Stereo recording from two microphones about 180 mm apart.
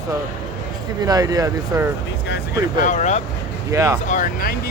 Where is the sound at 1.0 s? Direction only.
20° right (ahead or behind).